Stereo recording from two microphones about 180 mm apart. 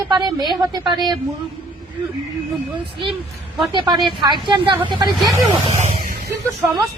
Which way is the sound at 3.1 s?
Centre (ahead or behind).